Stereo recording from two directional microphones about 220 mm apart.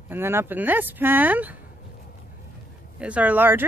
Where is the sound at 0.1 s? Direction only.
10° right (ahead or behind).